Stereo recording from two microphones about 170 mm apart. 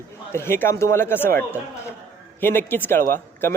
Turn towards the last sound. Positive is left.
turn(degrees=15)  # may be behind; listen again after turning